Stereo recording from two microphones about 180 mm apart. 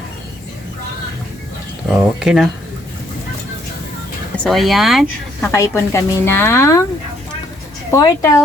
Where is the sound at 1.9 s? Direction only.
5° right (ahead or behind).